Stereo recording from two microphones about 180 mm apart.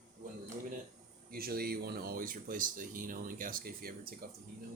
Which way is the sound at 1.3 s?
55° right (ahead or behind).